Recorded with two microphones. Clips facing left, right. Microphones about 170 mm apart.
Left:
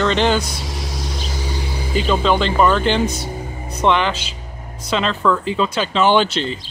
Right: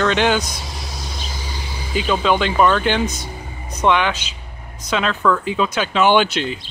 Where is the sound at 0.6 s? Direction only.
90° left; by 1.9 s 60° left (ahead or behind).